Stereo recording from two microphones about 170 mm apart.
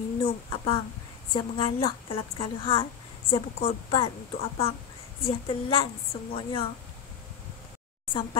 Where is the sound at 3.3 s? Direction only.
35° left (ahead or behind).